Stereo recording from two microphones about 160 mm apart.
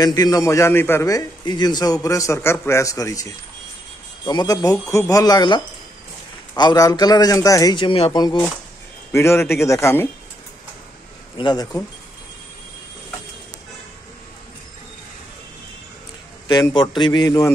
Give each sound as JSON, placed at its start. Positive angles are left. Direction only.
{"t": 0.0, "sound": "a man's voice", "side_deg": 25}
{"t": 9.1, "sound": "speech", "side_deg": 15}
{"t": 11.3, "sound": "a man's voice", "side_deg": 30}
{"t": 16.4, "sound": "a man's voice", "side_deg": 25}